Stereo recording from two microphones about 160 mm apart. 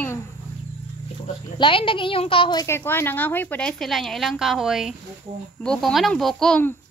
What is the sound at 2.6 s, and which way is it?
Speech, 15° left (ahead or behind).